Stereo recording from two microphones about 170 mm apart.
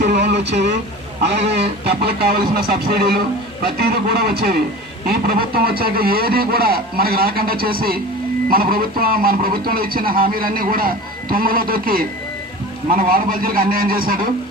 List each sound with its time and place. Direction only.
0.0 s radio: 75° right (ahead or behind); by 0.8 s 90° right
1.9 s a man's voice: 65° right (ahead or behind)